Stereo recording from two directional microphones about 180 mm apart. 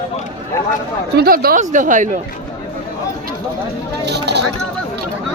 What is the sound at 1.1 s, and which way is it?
Speech, 60° right (ahead or behind).